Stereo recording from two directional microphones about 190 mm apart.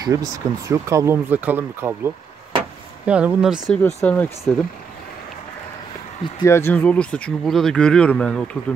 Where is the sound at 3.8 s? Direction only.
10° left (ahead or behind).